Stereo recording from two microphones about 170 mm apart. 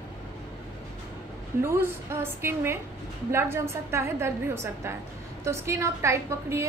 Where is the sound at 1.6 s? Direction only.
15° right (ahead or behind).